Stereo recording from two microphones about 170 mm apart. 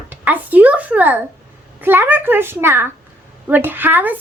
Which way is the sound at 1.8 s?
10° right (ahead or behind).